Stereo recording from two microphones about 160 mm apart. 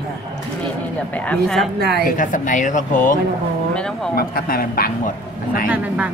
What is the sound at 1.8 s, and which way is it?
Speech, 90° right.